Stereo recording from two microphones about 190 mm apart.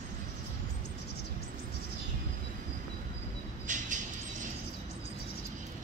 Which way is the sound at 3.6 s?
40° right (ahead or behind).